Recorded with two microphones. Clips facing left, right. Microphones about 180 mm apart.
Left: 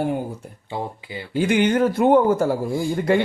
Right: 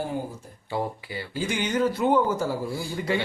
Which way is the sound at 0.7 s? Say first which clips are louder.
Even; 20° left (ahead or behind).